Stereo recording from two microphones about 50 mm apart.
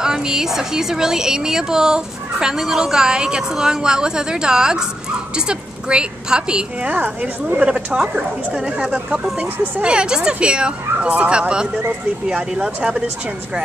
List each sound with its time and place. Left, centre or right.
0.0 s a woman's voice: centre
9.4 s speech: right
9.9 s a woman's voice: centre